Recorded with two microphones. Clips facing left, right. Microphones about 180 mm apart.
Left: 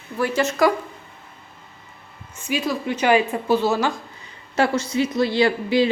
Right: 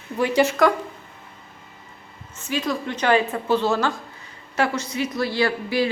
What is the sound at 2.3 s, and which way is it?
Speech, 10° left (ahead or behind).